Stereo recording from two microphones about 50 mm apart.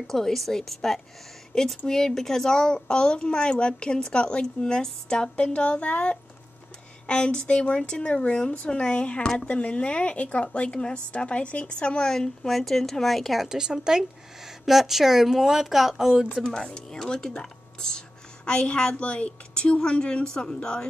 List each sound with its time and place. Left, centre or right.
0.0 s speech: centre
5.3 s a woman's voice: left
12.1 s speech: centre
13.5 s a woman's voice: centre
16.4 s a woman's voice: centre